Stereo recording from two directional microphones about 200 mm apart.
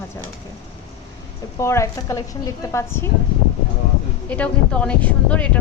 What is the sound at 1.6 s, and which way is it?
Speech, 15° left (ahead or behind).